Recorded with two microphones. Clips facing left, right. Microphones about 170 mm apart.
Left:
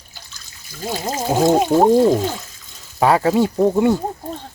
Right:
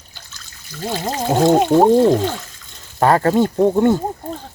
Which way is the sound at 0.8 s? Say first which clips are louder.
Right 1 dB; 5° left (ahead or behind).